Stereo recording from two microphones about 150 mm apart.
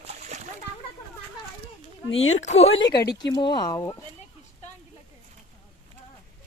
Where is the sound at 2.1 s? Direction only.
50° left (ahead or behind).